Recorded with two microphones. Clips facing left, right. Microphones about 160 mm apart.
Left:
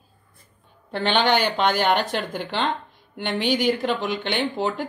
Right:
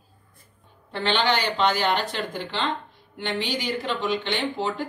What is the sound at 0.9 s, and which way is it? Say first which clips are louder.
Speech: left 3 dB; 50° left (ahead or behind).